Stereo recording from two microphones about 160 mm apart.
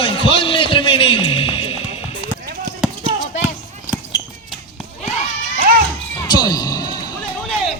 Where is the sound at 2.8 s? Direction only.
Centre (ahead or behind).